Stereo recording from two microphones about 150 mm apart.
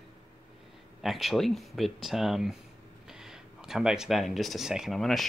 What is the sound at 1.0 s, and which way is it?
Speech, centre (ahead or behind).